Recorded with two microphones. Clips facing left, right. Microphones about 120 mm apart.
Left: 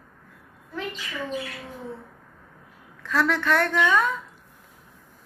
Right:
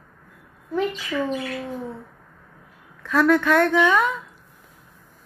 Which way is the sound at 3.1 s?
10° right (ahead or behind).